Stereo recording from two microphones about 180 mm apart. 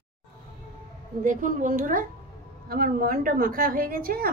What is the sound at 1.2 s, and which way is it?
A woman's voice, 45° right (ahead or behind).